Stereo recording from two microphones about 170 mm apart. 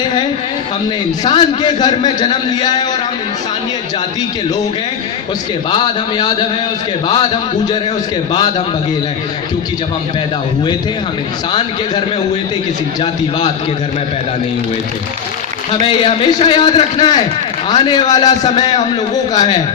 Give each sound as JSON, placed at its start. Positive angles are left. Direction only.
{"t": 1.2, "sound": "a man's voice", "side_deg": 25}
{"t": 5.7, "sound": "a man's voice", "side_deg": 30}
{"t": 15.7, "sound": "a man's voice", "side_deg": 30}